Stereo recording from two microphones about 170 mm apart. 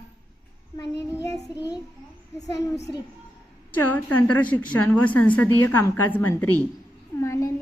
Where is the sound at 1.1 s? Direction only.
15° left (ahead or behind).